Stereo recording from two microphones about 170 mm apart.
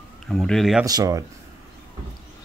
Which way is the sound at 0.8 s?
20° right (ahead or behind).